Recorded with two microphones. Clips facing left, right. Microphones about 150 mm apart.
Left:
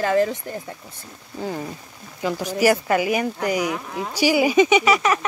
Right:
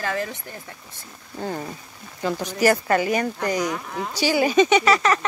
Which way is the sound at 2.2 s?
5° left (ahead or behind).